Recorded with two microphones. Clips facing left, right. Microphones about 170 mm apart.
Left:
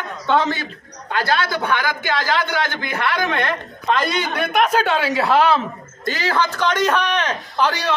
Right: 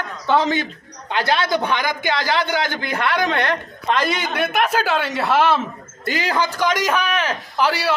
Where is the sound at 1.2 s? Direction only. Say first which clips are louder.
Right 2 dB; 15° right (ahead or behind).